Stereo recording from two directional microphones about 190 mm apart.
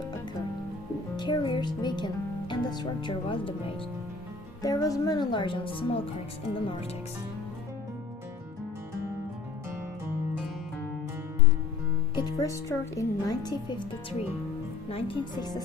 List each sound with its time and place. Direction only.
1.1 s speech: 25° left (ahead or behind)
4.6 s speech: 20° left (ahead or behind)
12.1 s speech: 15° left (ahead or behind)